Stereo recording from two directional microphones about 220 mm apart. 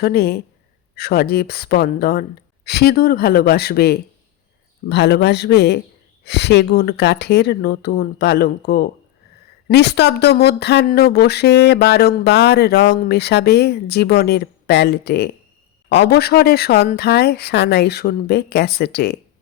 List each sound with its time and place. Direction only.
0.0 s a woman's voice: 45° left (ahead or behind)